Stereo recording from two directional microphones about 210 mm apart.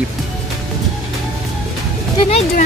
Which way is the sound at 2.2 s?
30° left (ahead or behind).